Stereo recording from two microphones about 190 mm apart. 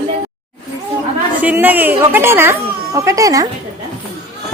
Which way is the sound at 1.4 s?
10° right (ahead or behind).